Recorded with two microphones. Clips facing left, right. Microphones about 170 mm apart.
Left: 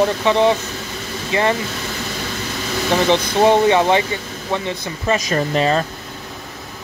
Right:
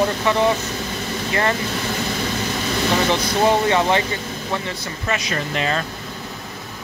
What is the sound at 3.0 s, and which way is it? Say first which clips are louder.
Speech: left 6 dB; 20° left (ahead or behind).